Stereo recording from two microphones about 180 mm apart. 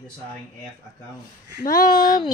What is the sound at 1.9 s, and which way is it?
Speech, 25° left (ahead or behind).